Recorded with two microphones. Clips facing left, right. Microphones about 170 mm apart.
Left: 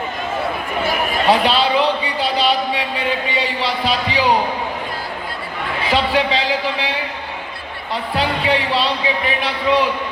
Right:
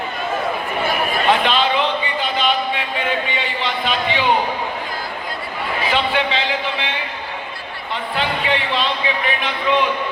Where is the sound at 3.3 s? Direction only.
35° left (ahead or behind).